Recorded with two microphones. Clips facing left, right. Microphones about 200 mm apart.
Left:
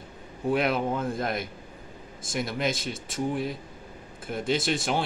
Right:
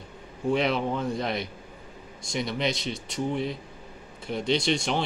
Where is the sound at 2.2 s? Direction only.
5° left (ahead or behind).